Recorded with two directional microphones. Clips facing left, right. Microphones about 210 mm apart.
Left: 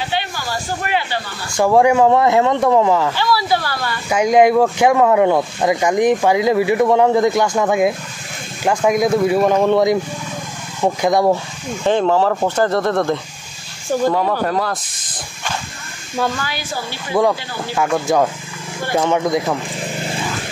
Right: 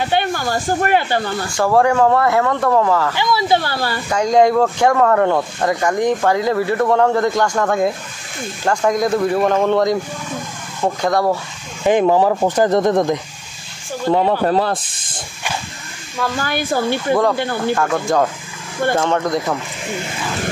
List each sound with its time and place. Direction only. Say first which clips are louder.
0.0 s speech: right 5 dB; 55° right (ahead or behind)
1.6 s speech: left 2 dB; 15° left (ahead or behind)
3.2 s speech: right 1 dB; 20° right (ahead or behind)
4.1 s speech: left 2 dB; 10° left (ahead or behind)
11.8 s speech: right 2 dB; 15° right (ahead or behind)
16.4 s speech: right 8 dB; 55° right (ahead or behind)
17.1 s speech: left 1 dB; 10° left (ahead or behind)
17.4 s speech: right 8 dB; 55° right (ahead or behind)
17.9 s speech: left 1 dB; 5° left (ahead or behind)